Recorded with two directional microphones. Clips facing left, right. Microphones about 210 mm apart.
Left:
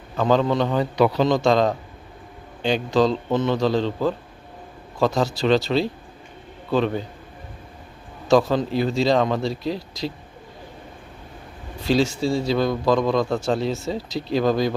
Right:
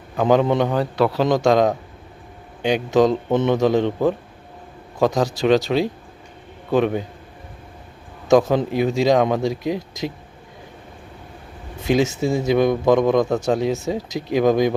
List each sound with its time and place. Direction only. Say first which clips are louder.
0.2 s a man's voice: right 3 dB; 15° right (ahead or behind)
0.7 s a man's voice: even; 5° right (ahead or behind)
8.3 s a man's voice: right 2 dB; 20° right (ahead or behind)
11.8 s a man's voice: right 2 dB; 20° right (ahead or behind)